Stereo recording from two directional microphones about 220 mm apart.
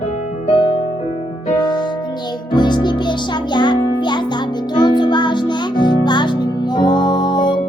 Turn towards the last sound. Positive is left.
turn(degrees=20)  # may be behind; listen again after turning